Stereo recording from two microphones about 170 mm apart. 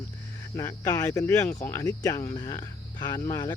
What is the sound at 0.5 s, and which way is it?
Speech, 20° left (ahead or behind).